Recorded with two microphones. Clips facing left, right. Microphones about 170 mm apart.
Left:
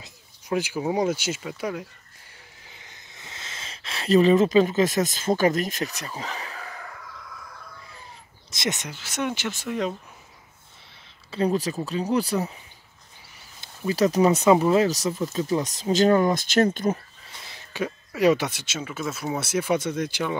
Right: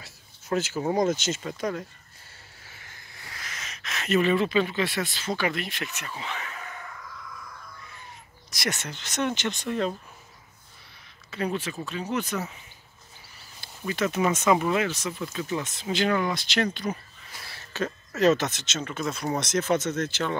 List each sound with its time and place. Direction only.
0.0 s speech: 10° left (ahead or behind)
2.6 s a sound: 20° left (ahead or behind); by 6.7 s 35° left (ahead or behind)
8.5 s speech: 20° left (ahead or behind)
8.9 s speech: 10° left (ahead or behind)
11.2 s speech: 30° left (ahead or behind)
13.6 s speech: 35° left (ahead or behind)
17.4 s speech: 20° left (ahead or behind)